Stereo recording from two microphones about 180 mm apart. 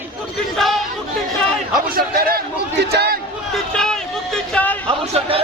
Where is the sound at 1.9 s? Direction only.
55° right (ahead or behind).